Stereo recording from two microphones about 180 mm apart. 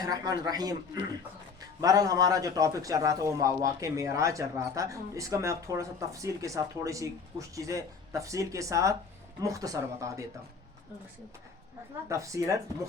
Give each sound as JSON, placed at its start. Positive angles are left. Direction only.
{"t": 0.0, "sound": "a man's voice", "side_deg": -20}
{"t": 1.8, "sound": "a man's voice", "side_deg": -20}
{"t": 12.0, "sound": "a man's voice", "side_deg": -15}